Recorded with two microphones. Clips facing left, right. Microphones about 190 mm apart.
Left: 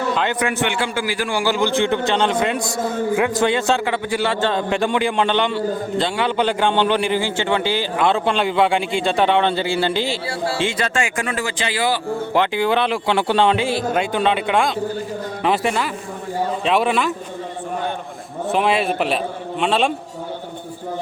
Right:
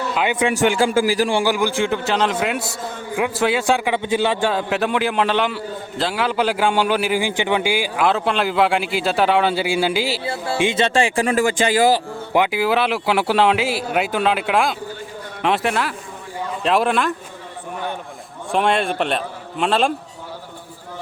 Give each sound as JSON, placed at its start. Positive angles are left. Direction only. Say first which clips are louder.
{"t": 0.1, "sound": "a man's voice", "louder": "right 2 dB", "side_deg": -10}
{"t": 0.5, "sound": "speech", "louder": "right 5 dB", "side_deg": -40}
{"t": 1.4, "sound": "a man's voice", "louder": "even", "side_deg": -15}
{"t": 10.2, "sound": "speech", "louder": "right 1 dB", "side_deg": -20}
{"t": 12.3, "sound": "a man's voice", "louder": "right 1 dB", "side_deg": -10}
{"t": 18.5, "sound": "a man's voice", "louder": "even", "side_deg": 5}